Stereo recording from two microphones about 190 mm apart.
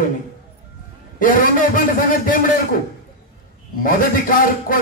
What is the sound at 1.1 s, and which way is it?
A man's voice, 45° left (ahead or behind).